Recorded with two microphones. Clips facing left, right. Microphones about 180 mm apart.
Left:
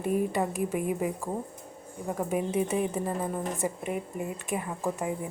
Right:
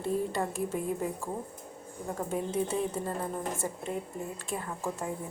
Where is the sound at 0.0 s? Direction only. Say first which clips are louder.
Left 3 dB; 15° left (ahead or behind).